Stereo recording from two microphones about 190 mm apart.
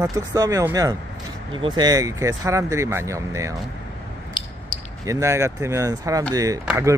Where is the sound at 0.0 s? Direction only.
20° right (ahead or behind).